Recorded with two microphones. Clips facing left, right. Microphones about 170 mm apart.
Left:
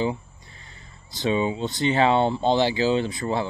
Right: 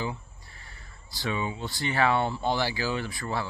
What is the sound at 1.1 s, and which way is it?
Speech, 20° left (ahead or behind).